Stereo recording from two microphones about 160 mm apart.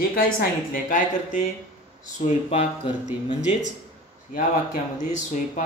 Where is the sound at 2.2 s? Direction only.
40° left (ahead or behind).